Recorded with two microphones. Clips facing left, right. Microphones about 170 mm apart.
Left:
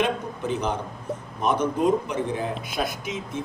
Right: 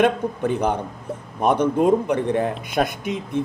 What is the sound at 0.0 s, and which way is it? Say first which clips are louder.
A man's voice: right 6 dB; 55° right (ahead or behind).